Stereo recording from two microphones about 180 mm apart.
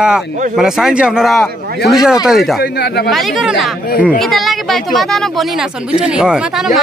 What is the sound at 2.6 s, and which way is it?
Speech, 60° left (ahead or behind).